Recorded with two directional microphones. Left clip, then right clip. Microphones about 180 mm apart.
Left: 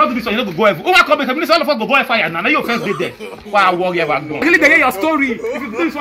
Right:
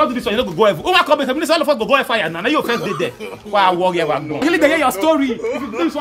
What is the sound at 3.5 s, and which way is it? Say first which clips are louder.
Speech: left 2 dB; 40° right (ahead or behind).